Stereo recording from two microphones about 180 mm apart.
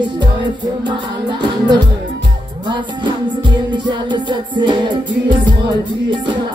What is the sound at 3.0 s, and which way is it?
Music, 25° right (ahead or behind).